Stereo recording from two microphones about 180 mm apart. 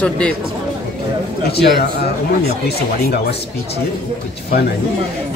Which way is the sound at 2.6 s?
60° left (ahead or behind).